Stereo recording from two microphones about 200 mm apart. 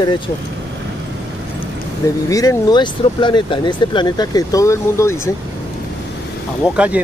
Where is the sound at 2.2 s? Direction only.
15° left (ahead or behind).